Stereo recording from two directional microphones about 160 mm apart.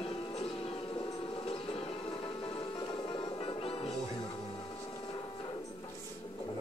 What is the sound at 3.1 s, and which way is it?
Music, 35° left (ahead or behind).